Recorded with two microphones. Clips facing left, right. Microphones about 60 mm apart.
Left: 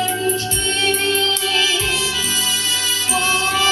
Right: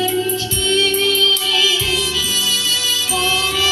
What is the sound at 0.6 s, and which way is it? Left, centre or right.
Music, left.